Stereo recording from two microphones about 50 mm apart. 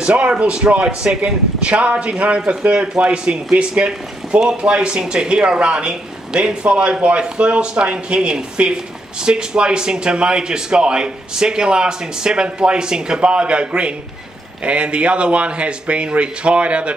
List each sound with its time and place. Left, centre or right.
0.0 s speech: right